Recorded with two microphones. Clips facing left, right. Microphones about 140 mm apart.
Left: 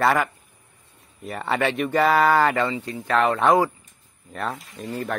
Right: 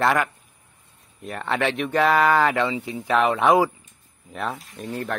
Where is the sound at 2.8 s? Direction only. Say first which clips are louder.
Even; 10° right (ahead or behind).